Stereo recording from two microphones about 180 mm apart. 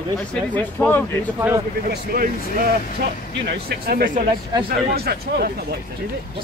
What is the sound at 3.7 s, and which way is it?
Speech, 60° right (ahead or behind).